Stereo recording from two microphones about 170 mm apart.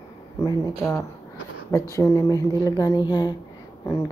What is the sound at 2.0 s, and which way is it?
Speech, 20° left (ahead or behind).